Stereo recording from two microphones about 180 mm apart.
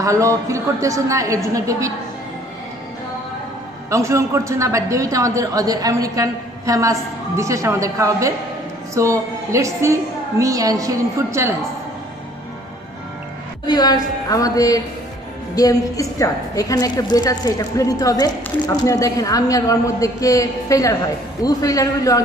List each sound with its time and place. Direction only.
0.0 s a woman's voice: 15° right (ahead or behind)
3.9 s a woman's voice: 15° right (ahead or behind)
13.7 s a woman's voice: 20° left (ahead or behind)